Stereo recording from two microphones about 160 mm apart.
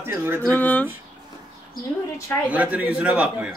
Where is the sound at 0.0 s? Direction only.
15° right (ahead or behind).